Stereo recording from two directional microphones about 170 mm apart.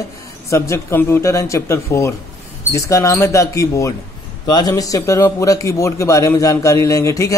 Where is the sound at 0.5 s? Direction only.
15° left (ahead or behind).